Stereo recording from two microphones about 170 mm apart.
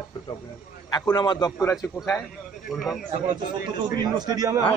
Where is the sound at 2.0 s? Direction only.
5° left (ahead or behind).